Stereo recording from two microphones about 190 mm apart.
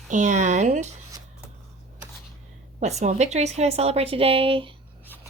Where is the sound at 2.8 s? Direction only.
35° right (ahead or behind).